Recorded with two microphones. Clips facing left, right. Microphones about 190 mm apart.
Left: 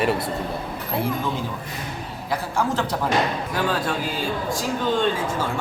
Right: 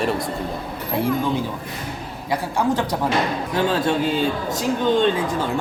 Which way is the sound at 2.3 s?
15° right (ahead or behind).